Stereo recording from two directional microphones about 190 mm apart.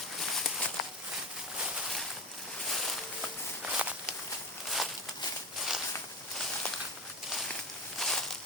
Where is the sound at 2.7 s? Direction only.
Centre (ahead or behind).